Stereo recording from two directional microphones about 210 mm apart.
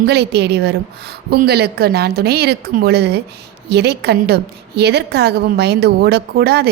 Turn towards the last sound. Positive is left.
turn(degrees=-50)  # may be behind; listen again after turning